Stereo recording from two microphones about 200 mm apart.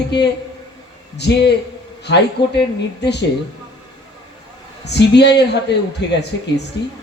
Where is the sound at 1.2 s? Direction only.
55° left (ahead or behind).